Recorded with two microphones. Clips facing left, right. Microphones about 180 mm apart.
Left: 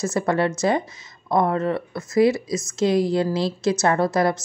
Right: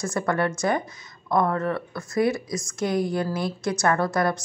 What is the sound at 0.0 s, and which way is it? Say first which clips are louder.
Speech: left 3 dB; 25° left (ahead or behind).